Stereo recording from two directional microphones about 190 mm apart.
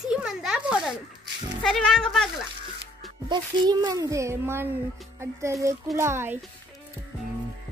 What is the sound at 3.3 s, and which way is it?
A child's voice, 20° right (ahead or behind).